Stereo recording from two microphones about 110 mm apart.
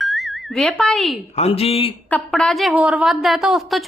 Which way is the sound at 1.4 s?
65° left (ahead or behind).